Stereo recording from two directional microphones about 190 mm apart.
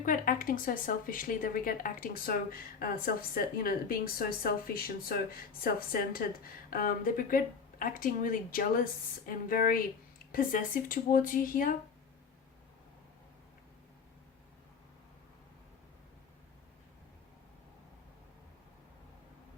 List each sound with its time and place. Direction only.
0.0 s speech: 45° left (ahead or behind)